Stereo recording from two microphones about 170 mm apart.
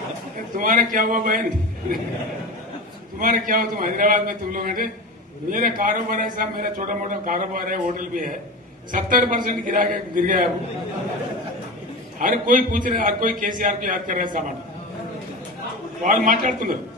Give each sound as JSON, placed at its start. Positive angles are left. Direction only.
{"t": 0.6, "sound": "a man's voice", "side_deg": -50}
{"t": 3.2, "sound": "a man's voice", "side_deg": -55}
{"t": 12.2, "sound": "a man's voice", "side_deg": -55}
{"t": 16.0, "sound": "a man's voice", "side_deg": -50}